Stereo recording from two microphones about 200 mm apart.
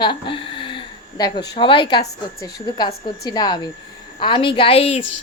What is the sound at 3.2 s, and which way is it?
A woman's voice, 20° left (ahead or behind).